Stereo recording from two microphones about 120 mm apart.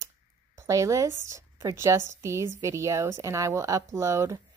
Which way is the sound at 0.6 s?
25° right (ahead or behind).